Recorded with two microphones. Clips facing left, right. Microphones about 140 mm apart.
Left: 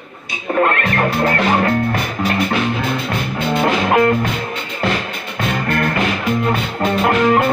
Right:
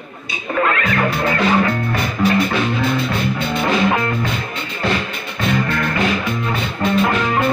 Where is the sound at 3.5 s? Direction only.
55° left (ahead or behind).